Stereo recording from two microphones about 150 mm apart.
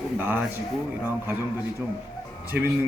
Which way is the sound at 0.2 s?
15° right (ahead or behind).